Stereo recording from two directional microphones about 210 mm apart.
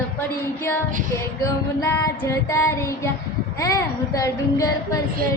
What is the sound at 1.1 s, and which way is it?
Female singing, 15° left (ahead or behind).